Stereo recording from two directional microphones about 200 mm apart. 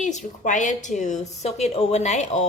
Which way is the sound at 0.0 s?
35° left (ahead or behind).